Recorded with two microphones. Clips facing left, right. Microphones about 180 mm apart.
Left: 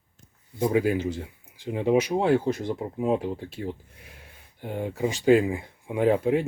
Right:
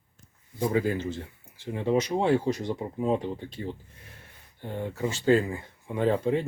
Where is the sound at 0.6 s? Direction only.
10° left (ahead or behind).